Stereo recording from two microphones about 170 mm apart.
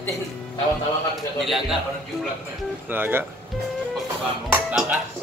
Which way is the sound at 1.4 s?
Centre (ahead or behind).